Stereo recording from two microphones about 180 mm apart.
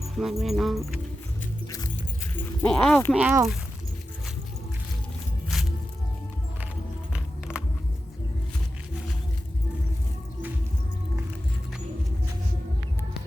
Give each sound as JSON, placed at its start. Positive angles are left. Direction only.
{"t": 0.2, "sound": "music", "side_deg": 0}
{"t": 2.6, "sound": "music", "side_deg": 5}
{"t": 3.2, "sound": "speech", "side_deg": -10}
{"t": 7.1, "sound": "music", "side_deg": -5}